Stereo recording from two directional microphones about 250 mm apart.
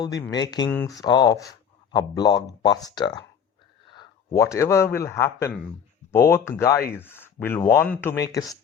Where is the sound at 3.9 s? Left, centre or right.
Centre.